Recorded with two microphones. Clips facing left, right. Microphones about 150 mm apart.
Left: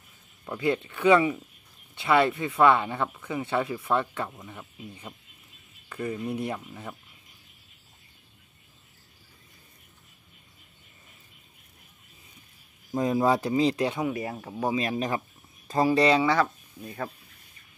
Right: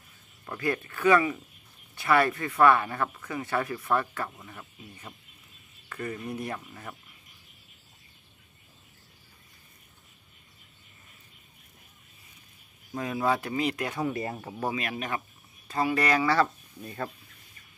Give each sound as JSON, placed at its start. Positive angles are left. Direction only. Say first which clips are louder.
{"t": 0.5, "sound": "speech", "louder": "left 4 dB", "side_deg": 15}
{"t": 13.0, "sound": "speech", "louder": "left 4 dB", "side_deg": 35}
{"t": 13.9, "sound": "speech", "louder": "left 1 dB", "side_deg": 10}
{"t": 14.7, "sound": "speech", "louder": "left 6 dB", "side_deg": 30}
{"t": 16.0, "sound": "speech", "louder": "left 3 dB", "side_deg": 25}
{"t": 16.3, "sound": "speech", "louder": "even", "side_deg": 10}